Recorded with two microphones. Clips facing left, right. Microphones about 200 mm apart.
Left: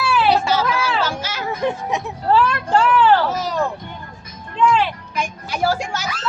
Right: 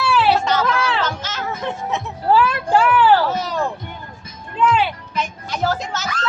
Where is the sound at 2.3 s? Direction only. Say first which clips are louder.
Right 1 dB; 5° right (ahead or behind).